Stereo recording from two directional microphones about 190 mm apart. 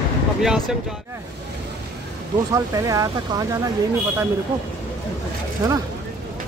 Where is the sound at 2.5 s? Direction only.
15° right (ahead or behind).